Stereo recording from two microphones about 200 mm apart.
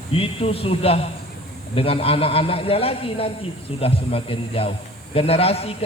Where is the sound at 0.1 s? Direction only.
30° left (ahead or behind).